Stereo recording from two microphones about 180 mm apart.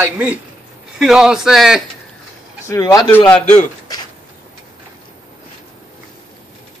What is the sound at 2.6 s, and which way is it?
Speech, 20° left (ahead or behind).